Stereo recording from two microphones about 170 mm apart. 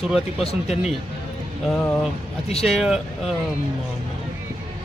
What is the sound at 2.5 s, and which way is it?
Speech, 35° left (ahead or behind).